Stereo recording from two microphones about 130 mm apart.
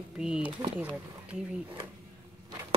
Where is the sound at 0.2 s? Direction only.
5° right (ahead or behind).